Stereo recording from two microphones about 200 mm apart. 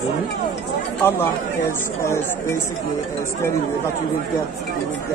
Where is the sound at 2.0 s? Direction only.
15° left (ahead or behind).